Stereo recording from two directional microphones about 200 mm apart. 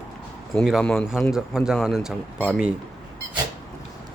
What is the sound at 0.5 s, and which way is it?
Speech, centre (ahead or behind).